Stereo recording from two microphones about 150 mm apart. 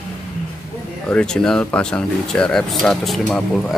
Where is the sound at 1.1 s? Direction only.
5° left (ahead or behind).